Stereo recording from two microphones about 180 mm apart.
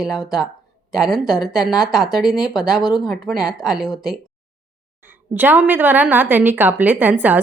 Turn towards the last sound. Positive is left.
turn(degrees=-10)  # may be behind; listen again after turning